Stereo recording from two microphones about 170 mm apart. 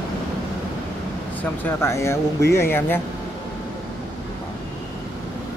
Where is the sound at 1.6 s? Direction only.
15° left (ahead or behind).